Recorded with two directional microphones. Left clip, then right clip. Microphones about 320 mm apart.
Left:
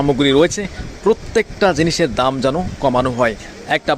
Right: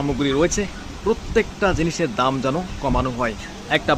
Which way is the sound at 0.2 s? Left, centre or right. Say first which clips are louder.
Left 3 dB; centre.